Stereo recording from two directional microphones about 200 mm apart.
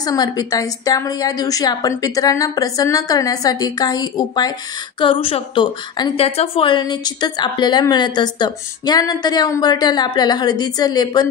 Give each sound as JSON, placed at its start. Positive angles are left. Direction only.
{"t": 0.0, "sound": "a woman's voice", "side_deg": 20}